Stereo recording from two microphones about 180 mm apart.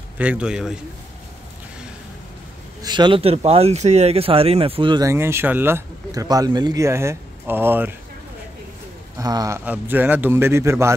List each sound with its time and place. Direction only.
0.2 s a man's voice: 5° right (ahead or behind)
2.8 s speech: 25° right (ahead or behind)
5.1 s speech: 15° right (ahead or behind)
9.2 s a man's voice: 20° right (ahead or behind)